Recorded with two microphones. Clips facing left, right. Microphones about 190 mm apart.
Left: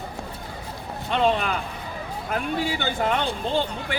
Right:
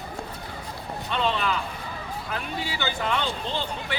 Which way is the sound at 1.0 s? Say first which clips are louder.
Left 4 dB; 50° left (ahead or behind).